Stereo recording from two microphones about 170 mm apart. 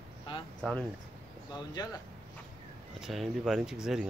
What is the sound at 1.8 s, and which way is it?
Speech, 25° left (ahead or behind).